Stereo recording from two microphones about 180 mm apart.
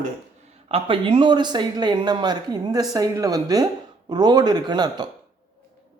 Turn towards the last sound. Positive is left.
turn(degrees=-25)  # may be behind; listen again after turning